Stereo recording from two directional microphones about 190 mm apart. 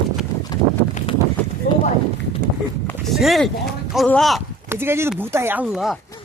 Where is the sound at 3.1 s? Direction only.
Centre (ahead or behind).